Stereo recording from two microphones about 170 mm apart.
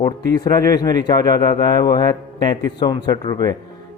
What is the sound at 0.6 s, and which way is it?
Speech, 20° left (ahead or behind).